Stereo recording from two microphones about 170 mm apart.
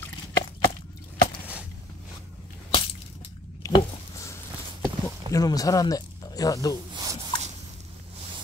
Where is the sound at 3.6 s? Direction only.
25° left (ahead or behind).